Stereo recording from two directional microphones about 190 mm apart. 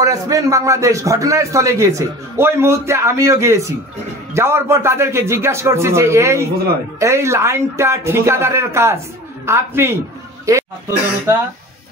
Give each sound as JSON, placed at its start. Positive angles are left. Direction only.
{"t": 0.0, "sound": "a man's voice", "side_deg": -20}